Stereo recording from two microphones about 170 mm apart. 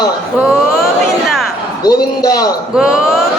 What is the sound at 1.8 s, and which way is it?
Speech, 20° left (ahead or behind).